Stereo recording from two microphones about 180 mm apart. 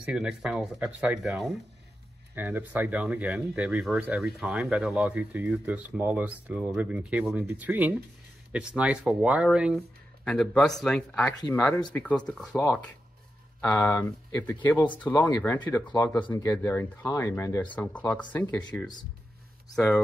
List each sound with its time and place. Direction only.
0.0 s speech: 5° right (ahead or behind)
12.5 s speech: 15° left (ahead or behind)
19.7 s speech: centre (ahead or behind)